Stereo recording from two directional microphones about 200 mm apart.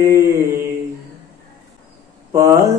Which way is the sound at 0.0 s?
15° right (ahead or behind).